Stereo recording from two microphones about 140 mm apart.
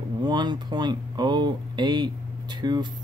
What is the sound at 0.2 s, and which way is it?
Speech, 30° right (ahead or behind).